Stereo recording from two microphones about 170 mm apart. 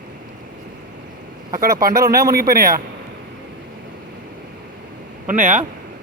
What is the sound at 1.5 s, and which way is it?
A man's voice, 55° right (ahead or behind).